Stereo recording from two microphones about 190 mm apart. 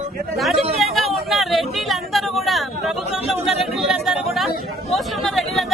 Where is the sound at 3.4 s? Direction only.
Centre (ahead or behind).